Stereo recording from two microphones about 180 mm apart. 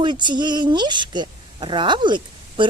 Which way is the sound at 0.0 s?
25° right (ahead or behind).